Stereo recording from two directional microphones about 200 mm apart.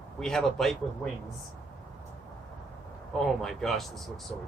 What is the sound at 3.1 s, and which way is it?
Speech, centre (ahead or behind).